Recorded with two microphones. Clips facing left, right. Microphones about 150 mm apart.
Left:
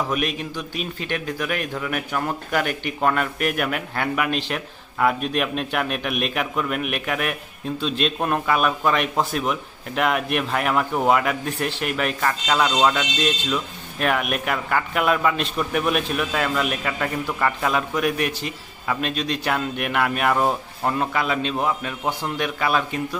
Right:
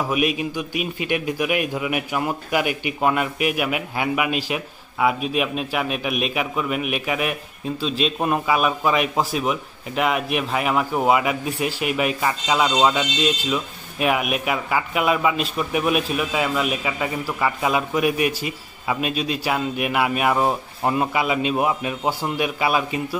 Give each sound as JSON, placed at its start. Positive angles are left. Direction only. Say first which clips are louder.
{"t": 0.1, "sound": "a man's voice", "louder": "right 3 dB", "side_deg": -10}